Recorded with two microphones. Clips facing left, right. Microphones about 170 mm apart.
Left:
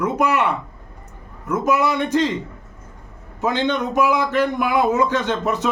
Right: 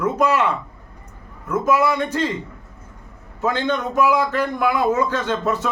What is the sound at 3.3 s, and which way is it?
Speech, 20° left (ahead or behind).